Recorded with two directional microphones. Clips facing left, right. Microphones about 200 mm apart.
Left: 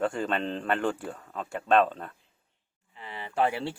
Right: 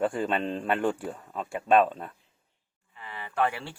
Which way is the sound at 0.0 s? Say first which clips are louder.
Right 1 dB; 15° right (ahead or behind).